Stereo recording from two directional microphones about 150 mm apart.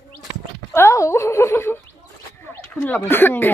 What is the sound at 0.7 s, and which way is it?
Speech, 15° left (ahead or behind).